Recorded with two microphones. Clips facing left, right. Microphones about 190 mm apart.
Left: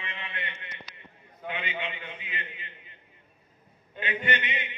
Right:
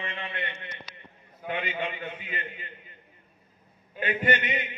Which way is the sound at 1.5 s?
45° right (ahead or behind).